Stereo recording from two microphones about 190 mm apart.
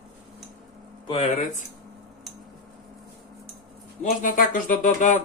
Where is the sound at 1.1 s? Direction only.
35° left (ahead or behind).